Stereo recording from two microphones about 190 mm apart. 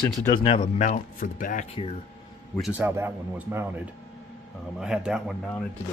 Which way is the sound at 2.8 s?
10° right (ahead or behind).